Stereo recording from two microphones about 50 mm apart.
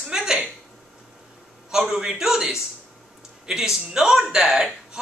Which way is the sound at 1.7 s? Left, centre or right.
Centre.